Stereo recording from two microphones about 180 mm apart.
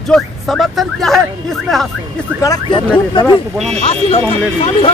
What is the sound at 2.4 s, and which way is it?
Speech, 20° left (ahead or behind).